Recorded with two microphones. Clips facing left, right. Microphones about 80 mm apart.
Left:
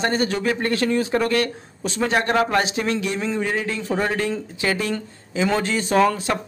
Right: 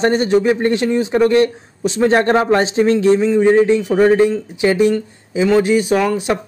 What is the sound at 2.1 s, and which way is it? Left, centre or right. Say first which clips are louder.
Speech: right 6 dB; right.